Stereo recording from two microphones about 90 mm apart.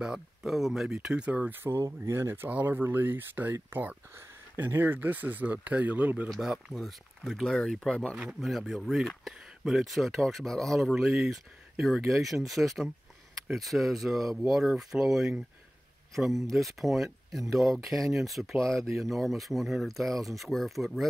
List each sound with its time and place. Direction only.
0.0 s speech: 5° right (ahead or behind)
6.2 s speech: 5° left (ahead or behind)
8.2 s speech: centre (ahead or behind)